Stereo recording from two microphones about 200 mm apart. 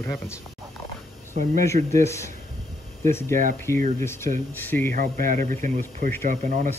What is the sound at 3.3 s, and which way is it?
Speech, 40° right (ahead or behind).